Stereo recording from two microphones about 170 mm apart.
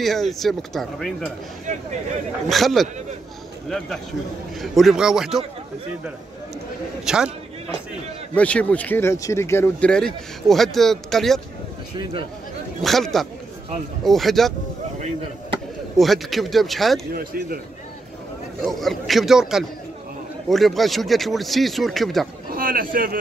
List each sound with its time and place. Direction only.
0.0 s speech: centre (ahead or behind)
1.7 s speech: 45° right (ahead or behind)
2.5 s speech: centre (ahead or behind)
7.1 s speech: 5° right (ahead or behind)
8.4 s speech: 5° left (ahead or behind)
12.8 s speech: centre (ahead or behind)
15.0 s speech: 40° right (ahead or behind)
16.0 s speech: centre (ahead or behind)
17.1 s speech: 55° right (ahead or behind)
18.6 s speech: centre (ahead or behind)
22.5 s speech: 55° right (ahead or behind)